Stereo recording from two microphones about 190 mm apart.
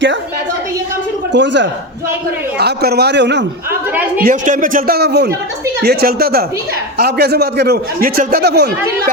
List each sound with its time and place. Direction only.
1.3 s a man's voice: 70° right (ahead or behind)
4.3 s a man's voice: 45° right (ahead or behind); by 8.7 s 60° right (ahead or behind)